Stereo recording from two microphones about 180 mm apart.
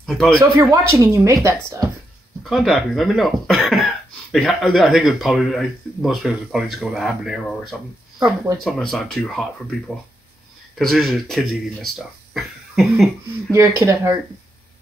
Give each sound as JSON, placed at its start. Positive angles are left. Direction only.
{"t": 0.0, "sound": "speech", "side_deg": 0}
{"t": 0.4, "sound": "speech", "side_deg": -15}
{"t": 2.5, "sound": "speech", "side_deg": 0}
{"t": 8.5, "sound": "speech", "side_deg": 0}
{"t": 10.8, "sound": "speech", "side_deg": 0}
{"t": 13.5, "sound": "speech", "side_deg": -15}